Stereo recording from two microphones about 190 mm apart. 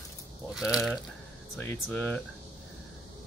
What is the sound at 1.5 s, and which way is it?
Speech, 10° left (ahead or behind).